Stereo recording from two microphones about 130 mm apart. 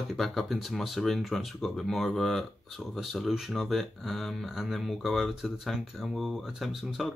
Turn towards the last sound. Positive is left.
turn(degrees=0)  # may be behind; listen again after turning